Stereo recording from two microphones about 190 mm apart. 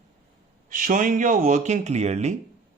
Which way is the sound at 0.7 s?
45° right (ahead or behind).